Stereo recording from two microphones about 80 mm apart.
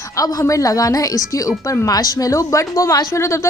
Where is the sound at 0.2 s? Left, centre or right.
Left.